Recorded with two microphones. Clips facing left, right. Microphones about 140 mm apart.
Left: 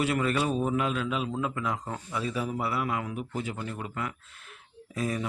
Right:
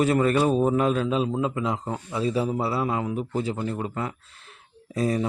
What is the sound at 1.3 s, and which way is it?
A man's voice, 20° right (ahead or behind).